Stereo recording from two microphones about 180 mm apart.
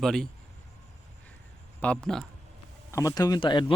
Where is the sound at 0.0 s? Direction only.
Centre (ahead or behind).